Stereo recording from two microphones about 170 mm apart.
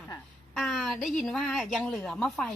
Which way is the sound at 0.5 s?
Centre (ahead or behind).